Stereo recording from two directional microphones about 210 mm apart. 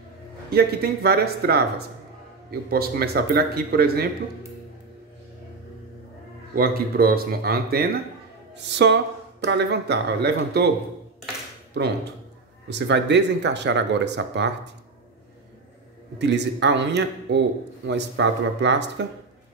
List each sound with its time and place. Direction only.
0.5 s speech: 50° right (ahead or behind)
6.5 s speech: 45° right (ahead or behind)
11.7 s a man's voice: 50° right (ahead or behind)
16.2 s a man's voice: 55° right (ahead or behind)